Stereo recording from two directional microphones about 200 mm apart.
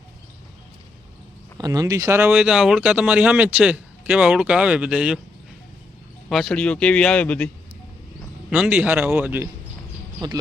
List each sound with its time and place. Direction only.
1.5 s speech: 20° right (ahead or behind)
6.2 s speech: 5° left (ahead or behind)
8.4 s a man's voice: 5° right (ahead or behind)
10.2 s speech: 20° right (ahead or behind)